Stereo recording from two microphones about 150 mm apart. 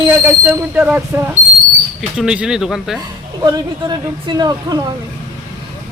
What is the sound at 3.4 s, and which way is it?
A woman's voice, 25° right (ahead or behind).